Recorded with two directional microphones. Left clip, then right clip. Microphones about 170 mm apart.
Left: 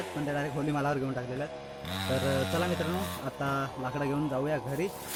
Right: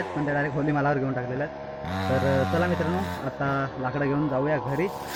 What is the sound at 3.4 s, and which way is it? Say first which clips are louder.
Speech: right 5 dB; 15° left (ahead or behind).